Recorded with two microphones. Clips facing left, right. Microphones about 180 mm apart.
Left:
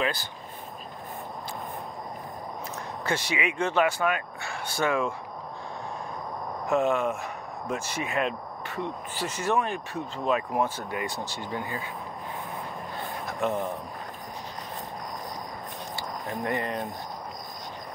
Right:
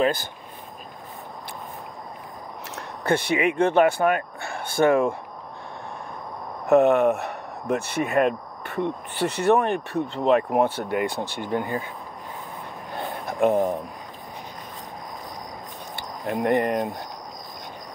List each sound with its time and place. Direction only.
0.0 s speech: 50° right (ahead or behind)
2.7 s speech: 55° right (ahead or behind)
6.7 s speech: 65° right (ahead or behind)
13.3 s speech: 55° right (ahead or behind)
16.0 s speech: 65° right (ahead or behind)